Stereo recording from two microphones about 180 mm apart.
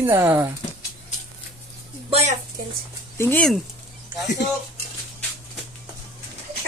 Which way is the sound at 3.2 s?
10° left (ahead or behind).